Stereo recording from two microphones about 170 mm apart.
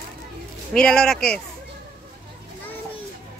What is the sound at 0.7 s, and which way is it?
Speech, 5° left (ahead or behind).